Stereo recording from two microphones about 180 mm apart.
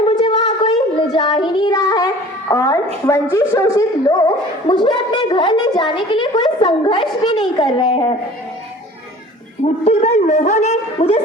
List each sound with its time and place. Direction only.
0.3 s a sound: 30° left (ahead or behind)
2.5 s a woman's voice: 20° left (ahead or behind)
9.6 s a man's voice: 40° left (ahead or behind)